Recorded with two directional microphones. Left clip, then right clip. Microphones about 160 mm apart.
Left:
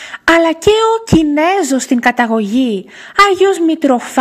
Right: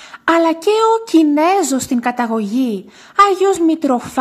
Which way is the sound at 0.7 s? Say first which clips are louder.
Left 3 dB; 10° left (ahead or behind).